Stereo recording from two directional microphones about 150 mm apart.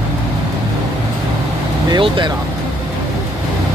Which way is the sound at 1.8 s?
30° right (ahead or behind).